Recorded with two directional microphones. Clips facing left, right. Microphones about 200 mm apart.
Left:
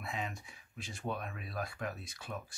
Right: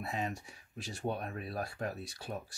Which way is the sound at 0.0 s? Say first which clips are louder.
Right 4 dB; 40° right (ahead or behind).